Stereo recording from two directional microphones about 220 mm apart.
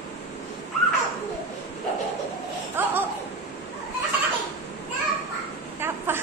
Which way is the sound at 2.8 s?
10° right (ahead or behind).